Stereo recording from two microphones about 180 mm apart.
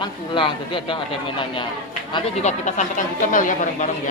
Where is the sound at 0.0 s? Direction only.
25° left (ahead or behind).